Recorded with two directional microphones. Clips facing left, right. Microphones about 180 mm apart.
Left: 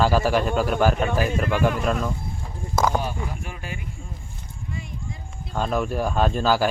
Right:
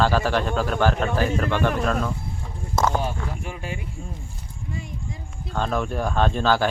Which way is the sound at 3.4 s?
25° right (ahead or behind).